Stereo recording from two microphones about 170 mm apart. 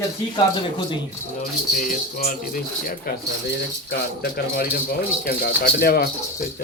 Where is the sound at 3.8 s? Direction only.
75° left (ahead or behind).